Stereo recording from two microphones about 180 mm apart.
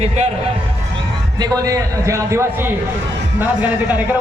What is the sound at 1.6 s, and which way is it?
A man's voice, 15° right (ahead or behind).